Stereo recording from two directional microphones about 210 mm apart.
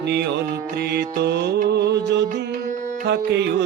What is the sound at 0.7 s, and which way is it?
Music, 50° right (ahead or behind).